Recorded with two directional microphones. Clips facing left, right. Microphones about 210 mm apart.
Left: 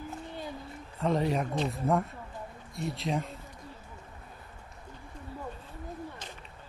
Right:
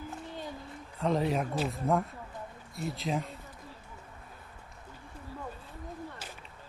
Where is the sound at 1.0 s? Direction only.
Centre (ahead or behind).